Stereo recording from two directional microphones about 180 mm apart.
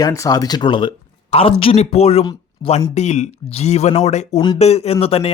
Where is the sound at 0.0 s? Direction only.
20° left (ahead or behind).